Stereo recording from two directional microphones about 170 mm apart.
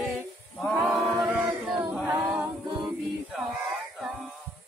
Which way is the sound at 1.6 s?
10° right (ahead or behind).